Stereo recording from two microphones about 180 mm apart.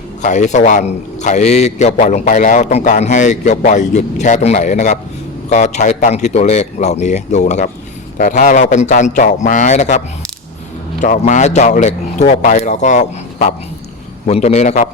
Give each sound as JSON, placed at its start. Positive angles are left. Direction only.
{"t": 0.2, "sound": "a man's voice", "side_deg": 40}
{"t": 11.0, "sound": "a man's voice", "side_deg": 40}